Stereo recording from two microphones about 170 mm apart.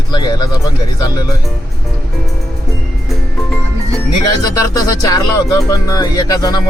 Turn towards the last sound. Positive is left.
turn(degrees=25)  # may be behind; listen again after turning